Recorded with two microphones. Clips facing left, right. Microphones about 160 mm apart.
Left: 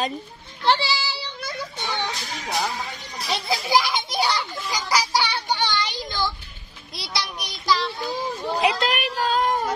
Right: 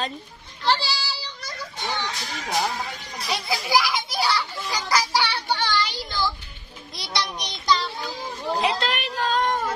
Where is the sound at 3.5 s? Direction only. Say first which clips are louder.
Left 1 dB; 20° left (ahead or behind).